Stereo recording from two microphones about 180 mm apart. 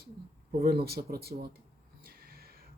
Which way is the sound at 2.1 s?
55° right (ahead or behind).